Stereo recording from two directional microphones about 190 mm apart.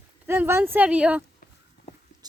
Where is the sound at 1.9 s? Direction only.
40° left (ahead or behind).